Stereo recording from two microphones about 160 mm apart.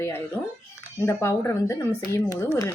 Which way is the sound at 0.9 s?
15° left (ahead or behind).